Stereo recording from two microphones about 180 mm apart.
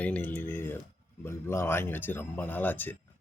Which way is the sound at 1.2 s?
15° left (ahead or behind).